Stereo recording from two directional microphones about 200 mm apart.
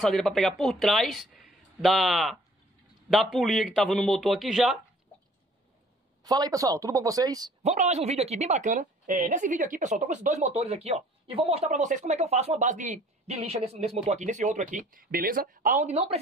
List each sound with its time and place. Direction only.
0.0 s speech: centre (ahead or behind)
6.2 s speech: 20° right (ahead or behind)
7.6 s a woman's voice: 35° right (ahead or behind)